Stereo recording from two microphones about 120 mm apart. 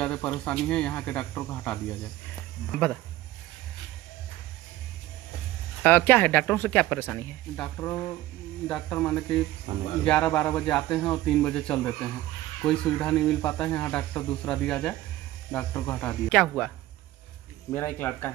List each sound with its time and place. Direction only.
0.0 s speech: 10° left (ahead or behind)
5.8 s speech: 15° left (ahead or behind)
7.8 s speech: 25° left (ahead or behind)
8.6 s speech: 5° left (ahead or behind)
8.9 s speech: 15° left (ahead or behind)
15.5 s speech: 20° left (ahead or behind)